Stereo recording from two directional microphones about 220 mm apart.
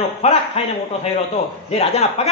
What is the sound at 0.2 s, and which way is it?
Speech, 30° left (ahead or behind).